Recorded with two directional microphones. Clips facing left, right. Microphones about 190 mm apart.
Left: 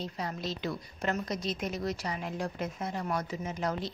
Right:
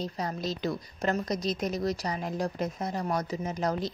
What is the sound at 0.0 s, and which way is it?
A woman's voice, 40° right (ahead or behind).